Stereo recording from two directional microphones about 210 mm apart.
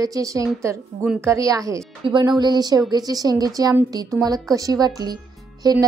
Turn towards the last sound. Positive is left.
turn(degrees=-20)  # may be behind; listen again after turning